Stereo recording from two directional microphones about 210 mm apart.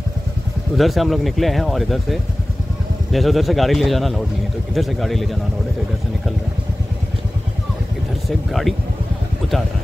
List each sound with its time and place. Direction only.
0.7 s speech: centre (ahead or behind)
8.3 s speech: centre (ahead or behind)